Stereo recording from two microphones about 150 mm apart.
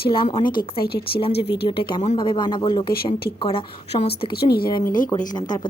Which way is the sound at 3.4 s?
40° left (ahead or behind).